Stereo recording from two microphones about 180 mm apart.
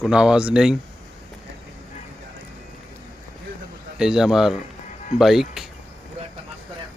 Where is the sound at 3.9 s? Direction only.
5° right (ahead or behind).